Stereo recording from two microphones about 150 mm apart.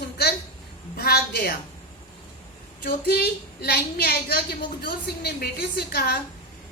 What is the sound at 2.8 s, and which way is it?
A woman's voice, 90° left.